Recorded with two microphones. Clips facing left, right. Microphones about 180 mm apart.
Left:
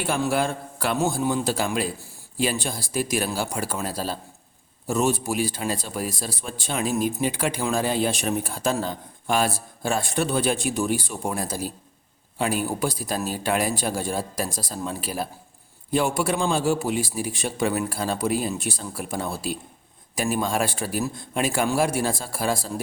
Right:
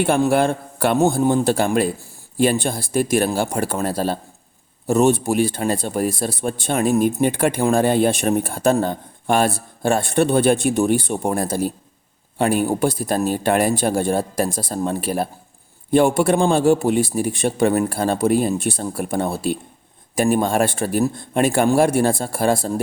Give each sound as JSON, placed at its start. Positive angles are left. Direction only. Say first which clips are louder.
{"t": 0.0, "sound": "speech", "louder": "right 7 dB", "side_deg": -55}